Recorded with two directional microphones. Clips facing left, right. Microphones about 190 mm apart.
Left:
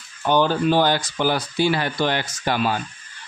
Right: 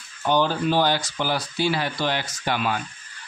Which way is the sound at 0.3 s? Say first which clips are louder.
Left 3 dB; 50° left (ahead or behind).